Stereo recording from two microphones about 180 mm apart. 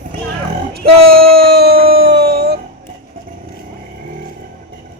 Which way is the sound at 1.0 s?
60° right (ahead or behind).